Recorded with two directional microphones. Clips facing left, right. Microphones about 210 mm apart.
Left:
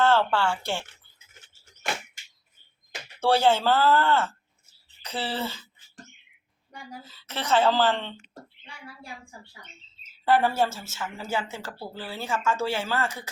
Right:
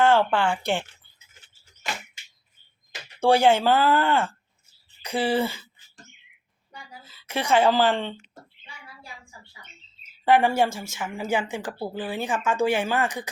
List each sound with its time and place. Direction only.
0.0 s a woman's voice: 15° right (ahead or behind)
3.2 s a woman's voice: 15° right (ahead or behind)
7.1 s a woman's voice: 10° right (ahead or behind)
10.0 s a woman's voice: 15° right (ahead or behind)